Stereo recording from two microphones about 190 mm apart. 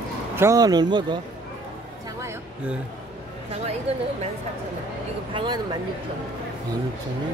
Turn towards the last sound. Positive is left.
turn(degrees=-25)  # may be behind; listen again after turning